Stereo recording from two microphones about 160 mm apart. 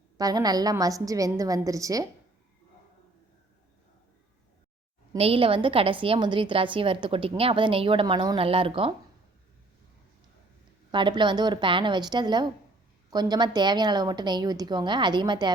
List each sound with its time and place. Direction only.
0.2 s a woman's voice: 25° right (ahead or behind)
5.1 s a woman's voice: 35° right (ahead or behind)
10.9 s a woman's voice: 30° right (ahead or behind)